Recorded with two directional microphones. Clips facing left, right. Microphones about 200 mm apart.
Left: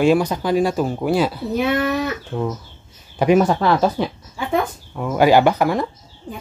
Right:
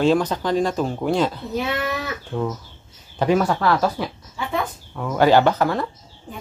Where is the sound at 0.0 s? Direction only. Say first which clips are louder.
Left 2 dB; 10° left (ahead or behind).